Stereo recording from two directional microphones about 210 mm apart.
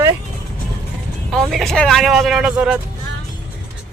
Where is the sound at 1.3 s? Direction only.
Centre (ahead or behind).